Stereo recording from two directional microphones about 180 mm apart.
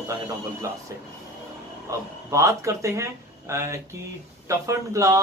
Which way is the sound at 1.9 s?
15° right (ahead or behind).